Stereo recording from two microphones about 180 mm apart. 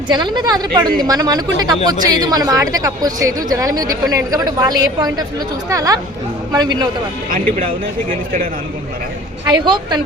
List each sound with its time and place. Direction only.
0.1 s a woman's voice: 25° right (ahead or behind)
9.5 s a woman's voice: 25° right (ahead or behind)